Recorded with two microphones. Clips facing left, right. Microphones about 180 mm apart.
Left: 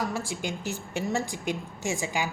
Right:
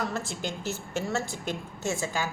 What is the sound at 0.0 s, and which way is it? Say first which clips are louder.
A woman's voice: left 1 dB; 10° left (ahead or behind).